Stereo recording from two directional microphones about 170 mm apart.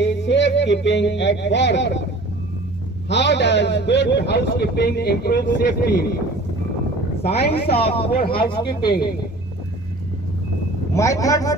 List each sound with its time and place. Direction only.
0.0 s speech: 90° left
3.1 s a man's voice: 90° left; by 6.1 s 70° left (ahead or behind)
7.2 s a man's voice: 35° left (ahead or behind)
10.9 s a man's voice: 20° left (ahead or behind)